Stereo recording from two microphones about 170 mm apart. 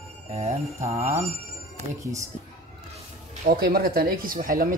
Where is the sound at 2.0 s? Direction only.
20° right (ahead or behind).